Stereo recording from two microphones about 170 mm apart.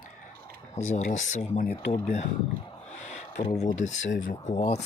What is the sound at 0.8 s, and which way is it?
Speech, 45° left (ahead or behind).